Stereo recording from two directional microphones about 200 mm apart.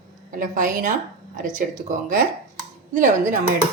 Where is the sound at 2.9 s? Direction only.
40° right (ahead or behind).